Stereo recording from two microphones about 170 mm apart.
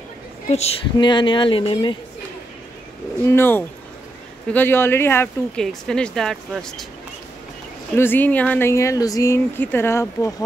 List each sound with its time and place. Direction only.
0.5 s a woman's voice: 40° left (ahead or behind)
0.9 s speech: 30° left (ahead or behind)
3.3 s speech: 15° left (ahead or behind)
5.6 s speech: 5° left (ahead or behind)
7.9 s speech: 10° left (ahead or behind)